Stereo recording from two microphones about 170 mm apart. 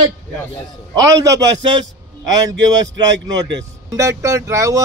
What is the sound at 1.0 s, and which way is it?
Speech, 20° right (ahead or behind).